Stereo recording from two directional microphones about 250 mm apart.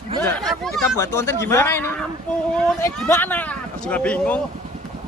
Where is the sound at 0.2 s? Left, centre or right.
Centre.